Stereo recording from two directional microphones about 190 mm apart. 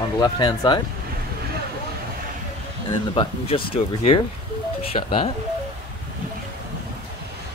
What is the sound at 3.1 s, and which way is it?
Speech, 25° left (ahead or behind).